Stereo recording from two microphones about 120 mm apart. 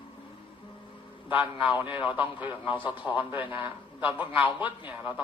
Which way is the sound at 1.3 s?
15° right (ahead or behind).